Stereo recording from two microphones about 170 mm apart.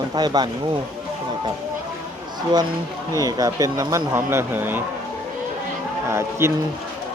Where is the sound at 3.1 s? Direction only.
20° right (ahead or behind).